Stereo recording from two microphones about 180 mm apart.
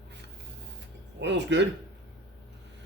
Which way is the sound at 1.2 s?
80° right.